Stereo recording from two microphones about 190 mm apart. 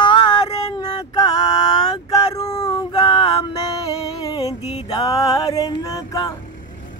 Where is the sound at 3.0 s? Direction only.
30° left (ahead or behind).